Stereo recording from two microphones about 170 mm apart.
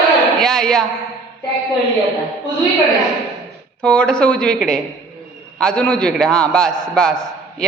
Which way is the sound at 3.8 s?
5° left (ahead or behind).